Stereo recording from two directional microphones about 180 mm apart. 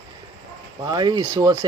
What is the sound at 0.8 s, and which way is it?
Speech, 25° right (ahead or behind).